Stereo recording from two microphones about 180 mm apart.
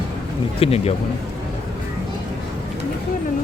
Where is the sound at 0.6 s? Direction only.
35° left (ahead or behind).